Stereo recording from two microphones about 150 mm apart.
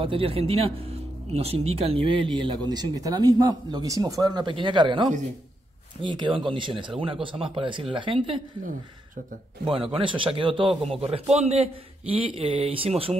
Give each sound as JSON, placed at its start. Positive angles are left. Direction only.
{"t": 0.0, "sound": "speech", "side_deg": -40}
{"t": 9.7, "sound": "speech", "side_deg": -35}